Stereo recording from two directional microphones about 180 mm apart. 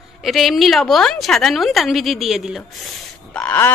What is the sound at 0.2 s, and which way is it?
A woman's voice, centre (ahead or behind).